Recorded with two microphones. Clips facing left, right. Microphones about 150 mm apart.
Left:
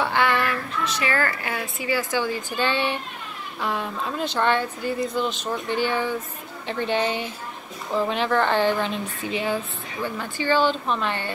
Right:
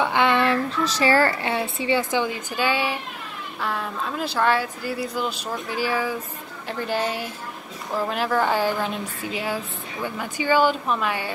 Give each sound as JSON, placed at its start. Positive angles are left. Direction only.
{"t": 0.0, "sound": "a woman's voice", "side_deg": -20}